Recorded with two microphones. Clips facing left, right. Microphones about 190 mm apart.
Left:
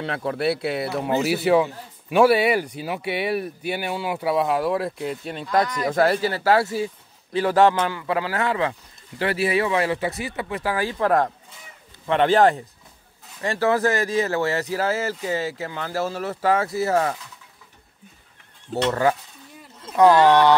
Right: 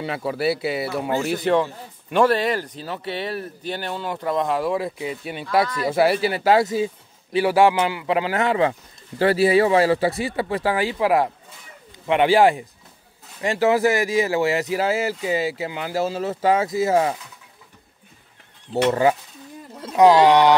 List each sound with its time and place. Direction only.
0.0 s speech: 5° right (ahead or behind); by 10.9 s 25° right (ahead or behind)
10.9 s speech: 10° right (ahead or behind)
18.8 s speech: 15° right (ahead or behind)